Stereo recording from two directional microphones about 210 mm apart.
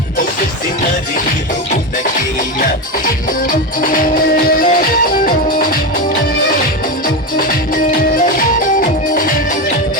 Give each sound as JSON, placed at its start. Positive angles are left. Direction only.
{"t": 3.8, "sound": "music", "side_deg": 40}
{"t": 8.8, "sound": "music", "side_deg": 40}